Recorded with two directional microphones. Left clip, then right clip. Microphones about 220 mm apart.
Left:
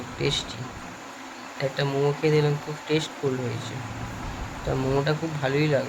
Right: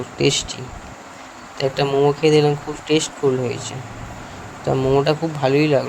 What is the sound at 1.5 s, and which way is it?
Speech, 25° right (ahead or behind).